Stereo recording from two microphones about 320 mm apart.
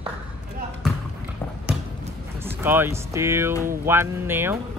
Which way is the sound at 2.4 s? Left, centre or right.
Centre.